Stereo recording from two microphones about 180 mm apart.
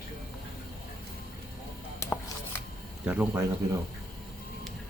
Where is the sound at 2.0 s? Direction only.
15° left (ahead or behind).